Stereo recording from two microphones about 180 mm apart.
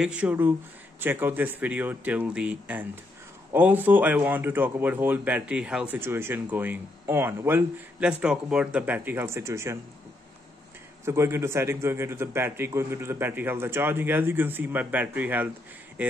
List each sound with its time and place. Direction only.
0.0 s speech: 5° right (ahead or behind)
11.1 s speech: 15° right (ahead or behind)